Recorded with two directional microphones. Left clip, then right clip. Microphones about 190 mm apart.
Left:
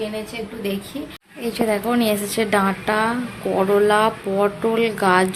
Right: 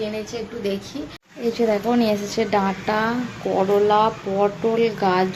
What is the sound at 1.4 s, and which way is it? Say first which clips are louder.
A woman's voice: right 1 dB; 10° right (ahead or behind).